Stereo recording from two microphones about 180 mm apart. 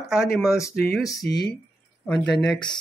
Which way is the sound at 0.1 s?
5° right (ahead or behind).